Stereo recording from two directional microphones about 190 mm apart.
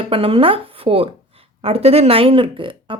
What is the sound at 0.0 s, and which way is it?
A woman's voice, 30° right (ahead or behind).